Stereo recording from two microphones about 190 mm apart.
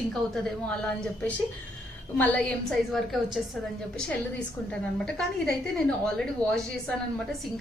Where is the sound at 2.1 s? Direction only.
5° left (ahead or behind).